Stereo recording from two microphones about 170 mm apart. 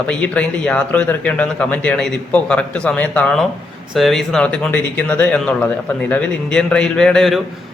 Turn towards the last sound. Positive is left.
turn(degrees=0)  # may be behind; listen again after turning